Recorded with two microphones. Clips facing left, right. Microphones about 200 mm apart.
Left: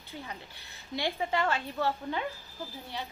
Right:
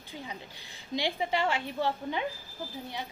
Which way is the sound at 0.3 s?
15° right (ahead or behind).